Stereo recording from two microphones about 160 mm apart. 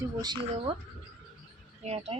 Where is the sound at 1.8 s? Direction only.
40° right (ahead or behind).